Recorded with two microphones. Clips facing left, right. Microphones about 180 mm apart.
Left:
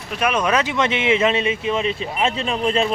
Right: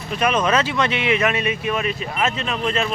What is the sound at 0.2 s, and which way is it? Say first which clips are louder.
Speech: even; 10° left (ahead or behind).